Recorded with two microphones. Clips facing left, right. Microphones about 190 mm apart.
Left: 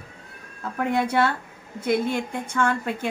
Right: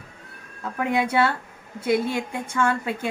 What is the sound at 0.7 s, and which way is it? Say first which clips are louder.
Speech: even; 5° right (ahead or behind).